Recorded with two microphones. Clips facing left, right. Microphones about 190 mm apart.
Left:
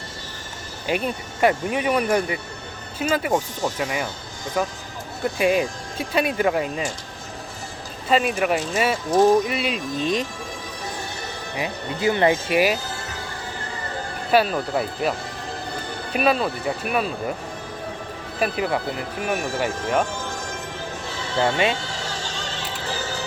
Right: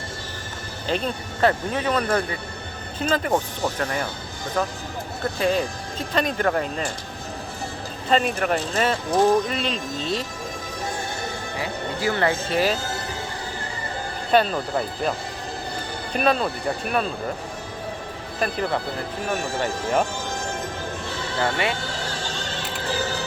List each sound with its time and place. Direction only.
0.9 s speech: 10° left (ahead or behind)
8.1 s speech: 10° left (ahead or behind)
11.5 s speech: 20° left (ahead or behind)
14.3 s speech: 5° left (ahead or behind)
16.1 s speech: 5° left (ahead or behind)
18.3 s speech: 10° left (ahead or behind)
21.4 s speech: 20° left (ahead or behind)